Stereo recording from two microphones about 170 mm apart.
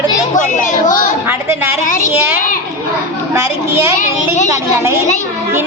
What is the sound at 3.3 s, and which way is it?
A man's voice, 15° right (ahead or behind).